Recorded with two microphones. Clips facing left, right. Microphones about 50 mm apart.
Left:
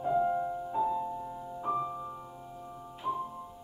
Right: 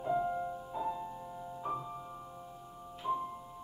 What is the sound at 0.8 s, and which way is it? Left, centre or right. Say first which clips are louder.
Music: left 6 dB; centre.